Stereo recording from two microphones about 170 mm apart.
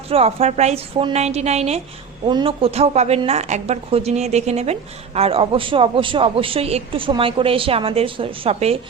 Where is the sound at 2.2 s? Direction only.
30° right (ahead or behind).